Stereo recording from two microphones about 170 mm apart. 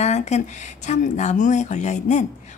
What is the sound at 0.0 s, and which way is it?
A woman's voice, 40° left (ahead or behind).